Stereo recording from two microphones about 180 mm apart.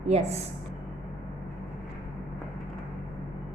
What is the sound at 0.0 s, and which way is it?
Speech, 35° right (ahead or behind).